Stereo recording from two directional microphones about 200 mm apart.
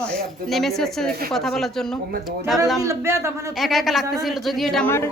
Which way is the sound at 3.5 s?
Centre (ahead or behind).